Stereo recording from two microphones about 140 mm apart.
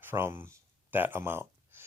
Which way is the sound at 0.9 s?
15° right (ahead or behind).